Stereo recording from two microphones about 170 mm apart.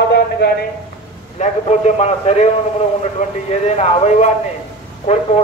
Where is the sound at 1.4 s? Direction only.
40° left (ahead or behind).